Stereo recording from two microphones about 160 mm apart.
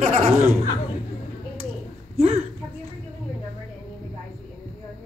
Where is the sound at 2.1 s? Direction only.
40° right (ahead or behind).